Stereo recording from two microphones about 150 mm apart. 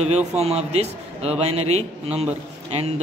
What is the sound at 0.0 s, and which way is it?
A man's voice, 45° right (ahead or behind).